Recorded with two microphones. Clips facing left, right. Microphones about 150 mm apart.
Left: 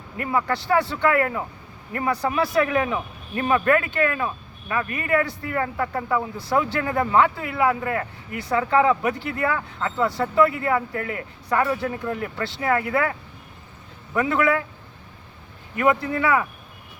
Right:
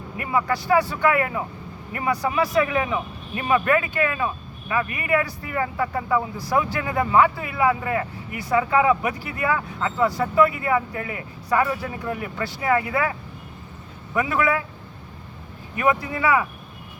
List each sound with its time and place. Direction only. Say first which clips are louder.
0.2 s a man's voice: even; 10° right (ahead or behind)
2.2 s speech: right 1 dB; centre (ahead or behind)
2.6 s speech: even; 15° right (ahead or behind)
11.4 s speech: even; centre (ahead or behind)
11.9 s speech: left 2 dB; 15° right (ahead or behind)
14.2 s speech: left 1 dB; 15° right (ahead or behind)
15.7 s speech: left 2 dB; 15° right (ahead or behind)